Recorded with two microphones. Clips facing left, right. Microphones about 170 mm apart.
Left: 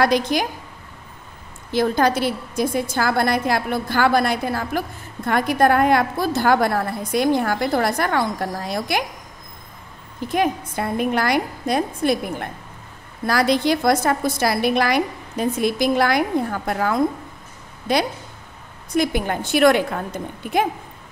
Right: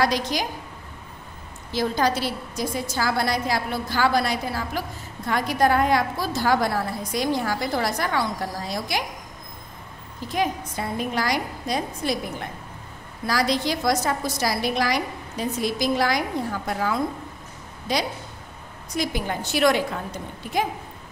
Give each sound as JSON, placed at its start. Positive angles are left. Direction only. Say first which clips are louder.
{"t": 0.0, "sound": "a woman's voice", "louder": "left 5 dB", "side_deg": 55}
{"t": 1.7, "sound": "a woman's voice", "louder": "left 4 dB", "side_deg": 55}
{"t": 10.2, "sound": "a woman's voice", "louder": "left 4 dB", "side_deg": 55}